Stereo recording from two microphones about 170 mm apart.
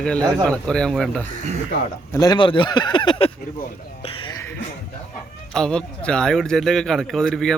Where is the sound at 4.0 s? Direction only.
35° left (ahead or behind).